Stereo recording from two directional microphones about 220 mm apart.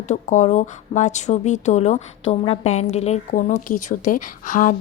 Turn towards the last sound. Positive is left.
turn(degrees=35)  # may be behind; listen again after turning